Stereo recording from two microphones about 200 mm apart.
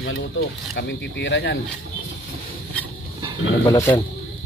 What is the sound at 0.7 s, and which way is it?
Speech, 60° left (ahead or behind).